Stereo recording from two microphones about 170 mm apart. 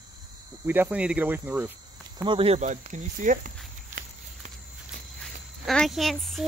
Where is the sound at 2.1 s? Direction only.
30° right (ahead or behind); by 4.0 s 50° right (ahead or behind).